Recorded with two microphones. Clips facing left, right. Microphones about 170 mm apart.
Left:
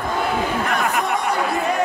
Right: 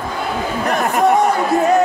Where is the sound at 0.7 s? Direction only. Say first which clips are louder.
Right 6 dB; 45° right (ahead or behind).